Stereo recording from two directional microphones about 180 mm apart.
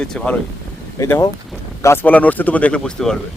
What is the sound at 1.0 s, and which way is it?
Speech, 15° left (ahead or behind).